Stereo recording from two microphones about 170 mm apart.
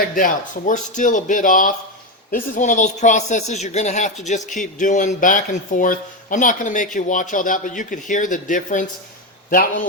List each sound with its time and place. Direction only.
0.7 s speech: 45° left (ahead or behind)